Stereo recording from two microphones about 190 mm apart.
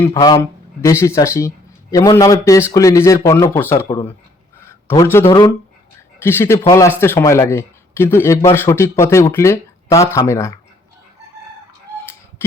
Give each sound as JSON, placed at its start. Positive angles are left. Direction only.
{"t": 0.0, "sound": "speech", "side_deg": 20}
{"t": 4.6, "sound": "a sound", "side_deg": 10}
{"t": 6.2, "sound": "speech", "side_deg": 15}